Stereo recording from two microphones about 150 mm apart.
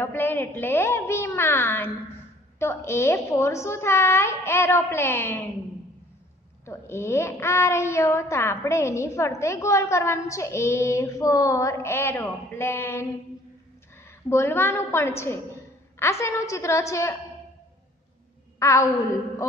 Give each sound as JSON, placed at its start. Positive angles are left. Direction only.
{"t": 0.0, "sound": "a woman's voice", "side_deg": 15}
{"t": 6.6, "sound": "a woman's voice", "side_deg": 15}
{"t": 14.3, "sound": "a woman's voice", "side_deg": 15}
{"t": 18.6, "sound": "a woman's voice", "side_deg": 20}